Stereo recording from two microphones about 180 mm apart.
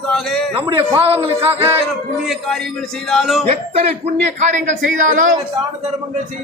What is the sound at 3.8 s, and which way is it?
A man's voice, 40° right (ahead or behind).